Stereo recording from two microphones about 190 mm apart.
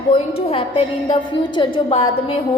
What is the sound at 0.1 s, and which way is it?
A woman's voice, 30° left (ahead or behind).